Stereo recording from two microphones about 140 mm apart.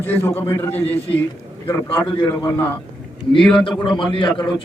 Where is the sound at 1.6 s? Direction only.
35° left (ahead or behind).